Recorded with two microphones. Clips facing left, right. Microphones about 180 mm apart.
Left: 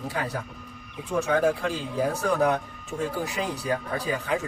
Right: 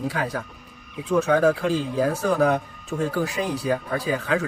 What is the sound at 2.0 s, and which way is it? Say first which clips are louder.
Speech: right 2 dB; 90° right.